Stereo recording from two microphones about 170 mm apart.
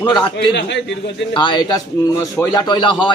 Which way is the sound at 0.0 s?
25° left (ahead or behind).